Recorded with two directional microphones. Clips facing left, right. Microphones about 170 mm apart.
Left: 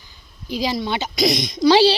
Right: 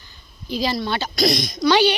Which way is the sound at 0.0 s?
15° left (ahead or behind).